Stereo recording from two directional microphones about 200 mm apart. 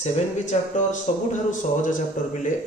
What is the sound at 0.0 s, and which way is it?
A man's voice, 35° left (ahead or behind).